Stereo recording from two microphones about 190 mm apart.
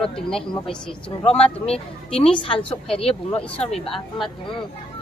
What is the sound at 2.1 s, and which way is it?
A woman's voice, 30° left (ahead or behind).